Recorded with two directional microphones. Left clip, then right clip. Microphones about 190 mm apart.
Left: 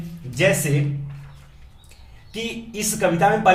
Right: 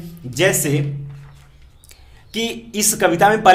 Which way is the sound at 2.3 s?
35° right (ahead or behind).